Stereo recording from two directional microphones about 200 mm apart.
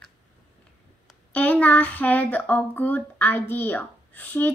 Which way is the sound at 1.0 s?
5° left (ahead or behind).